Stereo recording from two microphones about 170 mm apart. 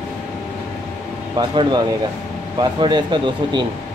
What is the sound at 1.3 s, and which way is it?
Speech, 25° right (ahead or behind).